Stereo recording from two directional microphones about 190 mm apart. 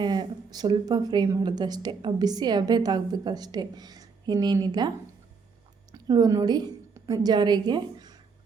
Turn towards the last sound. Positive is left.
turn(degrees=-25)  # may be behind; listen again after turning